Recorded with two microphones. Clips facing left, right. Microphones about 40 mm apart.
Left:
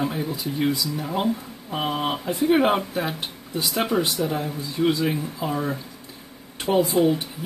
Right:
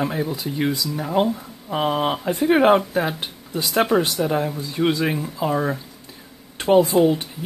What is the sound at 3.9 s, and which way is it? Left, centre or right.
Speech, right.